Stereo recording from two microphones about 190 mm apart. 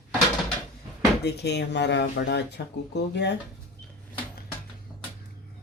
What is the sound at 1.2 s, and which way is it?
Speech, 60° left (ahead or behind).